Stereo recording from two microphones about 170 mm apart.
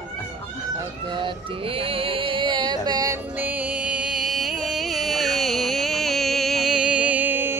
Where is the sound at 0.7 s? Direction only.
30° right (ahead or behind).